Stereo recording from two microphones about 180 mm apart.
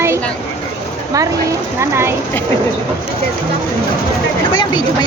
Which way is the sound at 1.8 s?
15° right (ahead or behind).